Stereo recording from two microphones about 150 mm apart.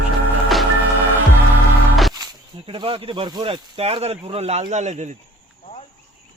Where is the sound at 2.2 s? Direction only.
30° right (ahead or behind); by 5.2 s 50° right (ahead or behind).